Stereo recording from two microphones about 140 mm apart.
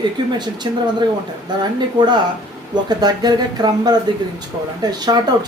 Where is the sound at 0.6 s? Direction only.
30° right (ahead or behind).